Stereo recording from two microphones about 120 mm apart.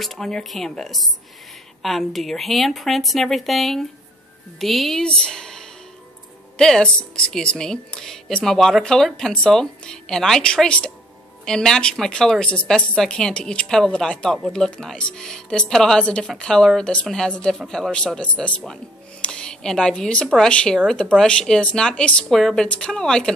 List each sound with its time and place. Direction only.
0.0 s speech: centre (ahead or behind)